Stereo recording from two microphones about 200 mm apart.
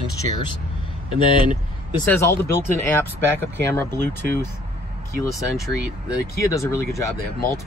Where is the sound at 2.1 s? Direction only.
10° left (ahead or behind).